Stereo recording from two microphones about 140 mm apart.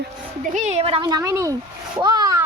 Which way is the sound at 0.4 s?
60° right (ahead or behind).